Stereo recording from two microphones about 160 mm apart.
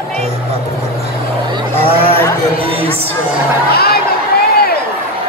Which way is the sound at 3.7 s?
75° left (ahead or behind).